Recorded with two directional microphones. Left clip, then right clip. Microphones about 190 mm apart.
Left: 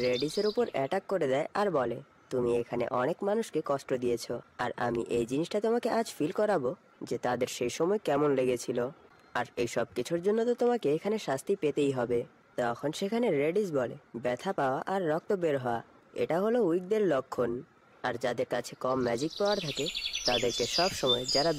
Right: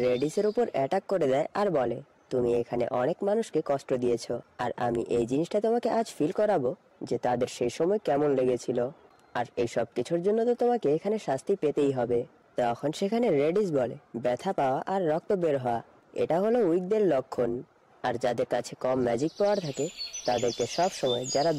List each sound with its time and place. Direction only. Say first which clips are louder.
0.0 s speech: right 3 dB; 20° right (ahead or behind)
19.6 s speech: even; centre (ahead or behind)